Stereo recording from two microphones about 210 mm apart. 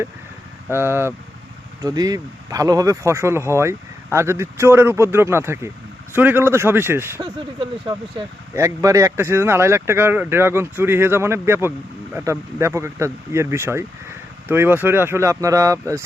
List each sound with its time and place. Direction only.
0.7 s speech: 10° right (ahead or behind)
7.2 s speech: 20° right (ahead or behind)